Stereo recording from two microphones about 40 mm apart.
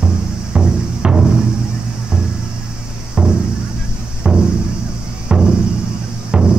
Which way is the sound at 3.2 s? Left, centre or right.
Centre.